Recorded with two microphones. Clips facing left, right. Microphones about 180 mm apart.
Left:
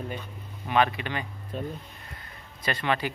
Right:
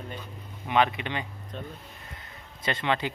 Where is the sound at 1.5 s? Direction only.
5° left (ahead or behind).